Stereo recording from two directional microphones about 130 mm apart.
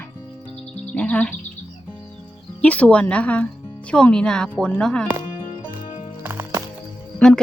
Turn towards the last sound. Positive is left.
turn(degrees=5)  # may be behind; listen again after turning